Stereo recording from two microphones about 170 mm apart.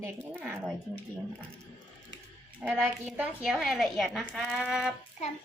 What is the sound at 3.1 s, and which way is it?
Speech, centre (ahead or behind).